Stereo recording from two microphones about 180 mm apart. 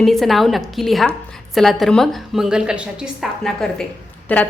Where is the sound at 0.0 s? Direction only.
Centre (ahead or behind).